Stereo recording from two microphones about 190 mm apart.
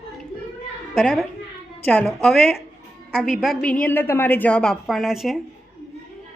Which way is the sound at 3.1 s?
Centre (ahead or behind).